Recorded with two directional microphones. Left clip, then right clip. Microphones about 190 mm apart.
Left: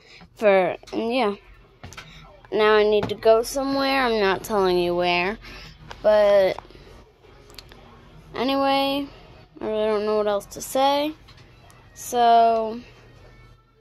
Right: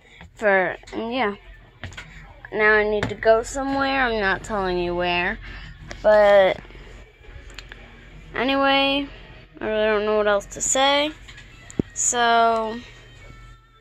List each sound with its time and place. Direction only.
0.4 s a woman's voice: 25° left (ahead or behind)
2.5 s speech: 30° left (ahead or behind)
5.9 s speech: 10° left (ahead or behind)
8.3 s speech: 15° left (ahead or behind)
10.7 s speech: 20° left (ahead or behind)